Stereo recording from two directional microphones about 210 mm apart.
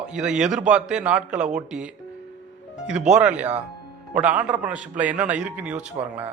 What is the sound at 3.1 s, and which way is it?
Speech, 5° right (ahead or behind).